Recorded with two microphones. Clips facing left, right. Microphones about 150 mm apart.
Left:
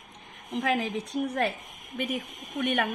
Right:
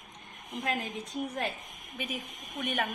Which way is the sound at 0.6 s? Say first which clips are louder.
Left 6 dB; 90° left.